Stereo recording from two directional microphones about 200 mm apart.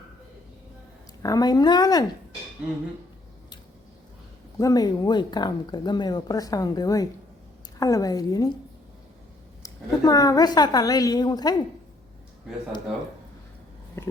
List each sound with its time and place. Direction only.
1.2 s speech: 20° left (ahead or behind)
4.5 s a woman's voice: 20° left (ahead or behind)
9.6 s speech: 15° left (ahead or behind)